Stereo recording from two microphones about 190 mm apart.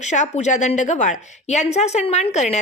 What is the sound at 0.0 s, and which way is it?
A woman's voice, 40° left (ahead or behind).